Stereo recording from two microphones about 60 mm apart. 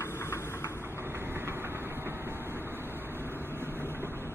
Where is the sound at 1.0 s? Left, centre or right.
Right.